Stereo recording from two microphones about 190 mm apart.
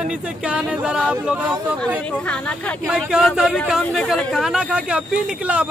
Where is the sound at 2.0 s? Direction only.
5° left (ahead or behind).